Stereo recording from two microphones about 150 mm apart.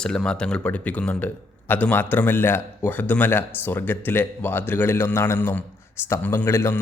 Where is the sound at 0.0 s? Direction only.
5° left (ahead or behind).